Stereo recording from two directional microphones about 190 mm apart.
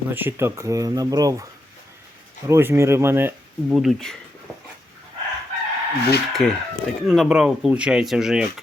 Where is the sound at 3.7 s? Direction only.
Centre (ahead or behind).